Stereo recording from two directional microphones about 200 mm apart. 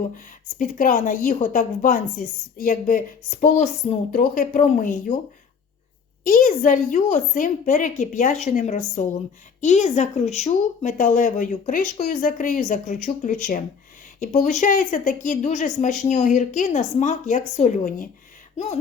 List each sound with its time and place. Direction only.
0.6 s a woman's voice: 40° left (ahead or behind)
6.2 s a woman's voice: 40° left (ahead or behind)